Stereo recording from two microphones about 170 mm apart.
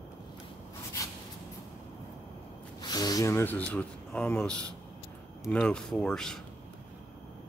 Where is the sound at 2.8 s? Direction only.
25° left (ahead or behind); by 6.4 s 5° left (ahead or behind).